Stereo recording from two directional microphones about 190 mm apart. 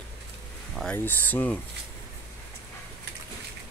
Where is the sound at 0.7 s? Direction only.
5° left (ahead or behind).